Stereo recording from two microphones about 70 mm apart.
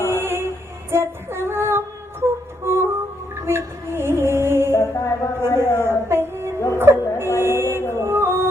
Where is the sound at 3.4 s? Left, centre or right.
Right.